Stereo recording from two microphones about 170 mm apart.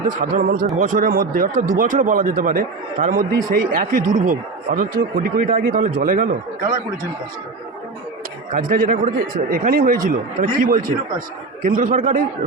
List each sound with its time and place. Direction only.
0.2 s speech: 55° right (ahead or behind)
8.5 s speech: 55° right (ahead or behind)